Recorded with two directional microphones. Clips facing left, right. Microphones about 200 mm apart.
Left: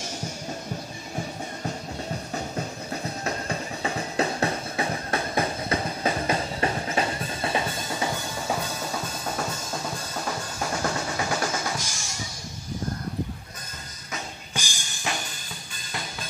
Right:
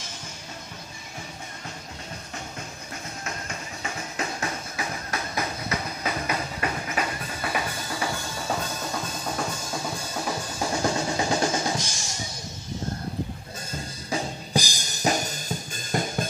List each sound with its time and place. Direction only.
2.9 s music: 35° left (ahead or behind); by 8.5 s 20° left (ahead or behind)
8.9 s drum: 5° left (ahead or behind)
10.1 s drum: 10° right (ahead or behind)
10.7 s drum: 20° right (ahead or behind)
14.1 s music: 35° right (ahead or behind)